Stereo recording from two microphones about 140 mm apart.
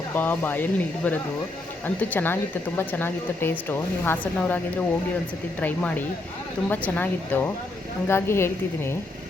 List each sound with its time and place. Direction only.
0.2 s speech: 15° left (ahead or behind)